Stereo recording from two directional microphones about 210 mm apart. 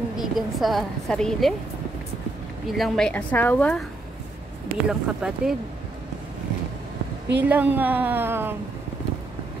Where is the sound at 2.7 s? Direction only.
Centre (ahead or behind).